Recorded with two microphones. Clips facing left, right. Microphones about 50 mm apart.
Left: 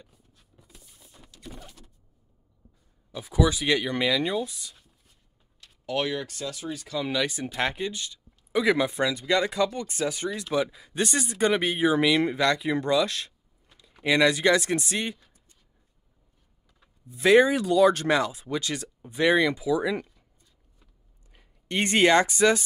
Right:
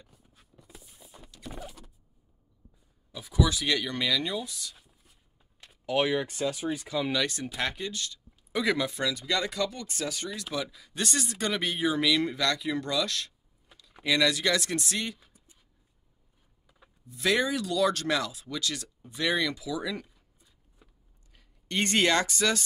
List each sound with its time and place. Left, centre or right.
0.2 s a sound: centre
0.7 s rodents: centre
3.2 s speech: centre
4.7 s a sound: centre
5.7 s speech: centre
7.0 s speech: centre; by 13.3 s left
13.7 s typing: centre
14.0 s speech: left
15.1 s a sound: centre
17.1 s speech: left
20.2 s a sound: centre
21.3 s speech: centre